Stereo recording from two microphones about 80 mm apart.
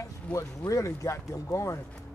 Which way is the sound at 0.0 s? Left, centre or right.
Left.